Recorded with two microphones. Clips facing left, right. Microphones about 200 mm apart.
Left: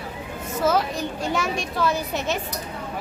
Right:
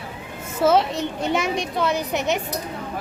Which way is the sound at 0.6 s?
25° right (ahead or behind).